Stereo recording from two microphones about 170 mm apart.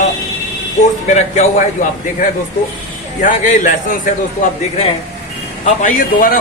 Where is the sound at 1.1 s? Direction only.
45° left (ahead or behind).